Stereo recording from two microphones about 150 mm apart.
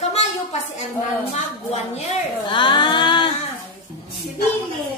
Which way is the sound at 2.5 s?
30° left (ahead or behind).